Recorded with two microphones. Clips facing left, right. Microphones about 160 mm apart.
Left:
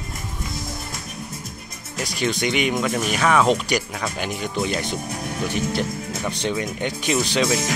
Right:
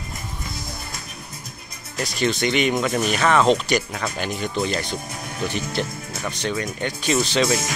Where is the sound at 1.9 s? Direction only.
10° left (ahead or behind).